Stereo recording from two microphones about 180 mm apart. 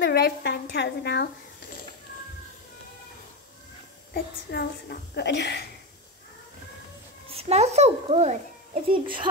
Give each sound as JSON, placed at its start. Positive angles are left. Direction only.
{"t": 0.0, "sound": "a child's voice", "side_deg": 65}
{"t": 4.1, "sound": "speech", "side_deg": 60}
{"t": 7.2, "sound": "a child's voice", "side_deg": -35}
{"t": 8.9, "sound": "speech", "side_deg": -25}